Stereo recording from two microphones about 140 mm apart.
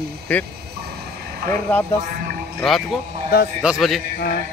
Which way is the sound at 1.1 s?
90° right.